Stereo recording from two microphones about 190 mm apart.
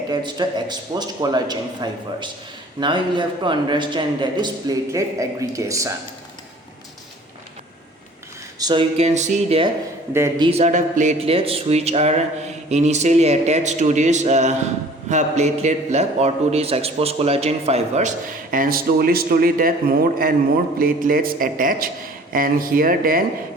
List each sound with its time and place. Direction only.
0.1 s a man's voice: 20° right (ahead or behind)
8.5 s speech: 25° right (ahead or behind)
10.1 s a man's voice: 15° right (ahead or behind)
10.4 s speech: 35° right (ahead or behind)
18.5 s a man's voice: 45° right (ahead or behind)